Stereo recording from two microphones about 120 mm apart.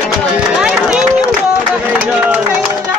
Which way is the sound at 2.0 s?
10° right (ahead or behind).